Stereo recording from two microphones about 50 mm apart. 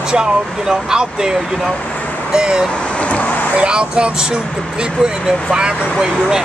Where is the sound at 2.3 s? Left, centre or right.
Centre.